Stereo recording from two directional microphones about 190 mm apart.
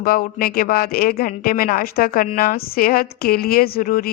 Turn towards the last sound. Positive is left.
turn(degrees=50)  # may be behind; listen again after turning